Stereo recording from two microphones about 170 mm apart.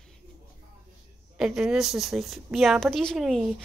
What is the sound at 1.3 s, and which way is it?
A woman's voice, 5° right (ahead or behind).